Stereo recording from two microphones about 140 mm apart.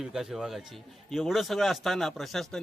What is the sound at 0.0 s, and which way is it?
A man's voice, 5° right (ahead or behind).